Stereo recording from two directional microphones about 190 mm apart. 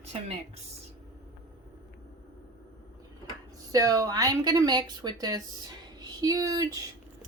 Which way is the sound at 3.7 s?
20° right (ahead or behind).